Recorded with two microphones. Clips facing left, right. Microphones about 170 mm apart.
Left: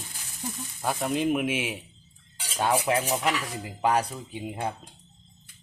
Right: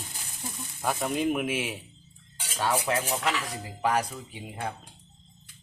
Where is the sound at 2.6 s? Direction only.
20° left (ahead or behind).